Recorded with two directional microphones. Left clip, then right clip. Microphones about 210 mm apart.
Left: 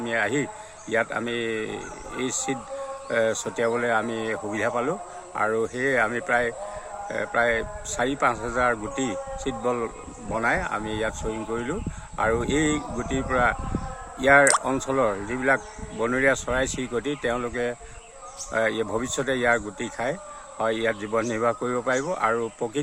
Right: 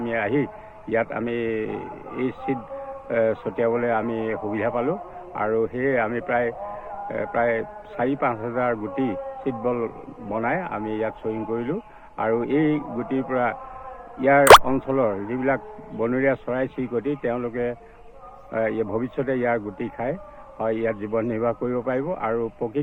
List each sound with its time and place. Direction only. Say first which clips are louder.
0.0 s speech: right 1 dB; 30° left (ahead or behind)